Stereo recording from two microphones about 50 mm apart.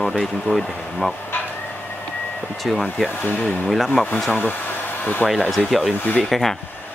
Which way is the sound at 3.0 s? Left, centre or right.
Left.